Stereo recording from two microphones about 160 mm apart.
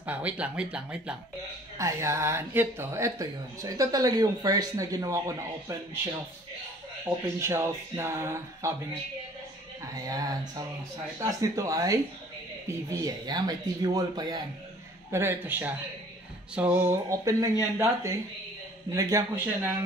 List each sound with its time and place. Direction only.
0.0 s speech: 10° right (ahead or behind)
1.8 s speech: 20° right (ahead or behind)
7.3 s speech: 15° right (ahead or behind)
9.9 s speech: 20° right (ahead or behind)
13.0 s speech: 25° right (ahead or behind)
15.0 s speech: 15° right (ahead or behind)